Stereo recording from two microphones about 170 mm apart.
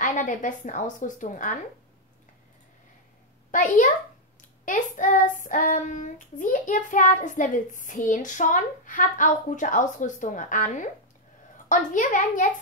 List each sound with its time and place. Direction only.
0.0 s child singing: 50° left (ahead or behind)
3.5 s child singing: 50° left (ahead or behind)
11.5 s a child's voice: 50° left (ahead or behind)